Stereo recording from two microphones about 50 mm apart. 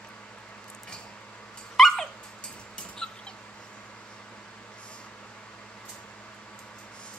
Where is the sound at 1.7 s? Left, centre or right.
Centre.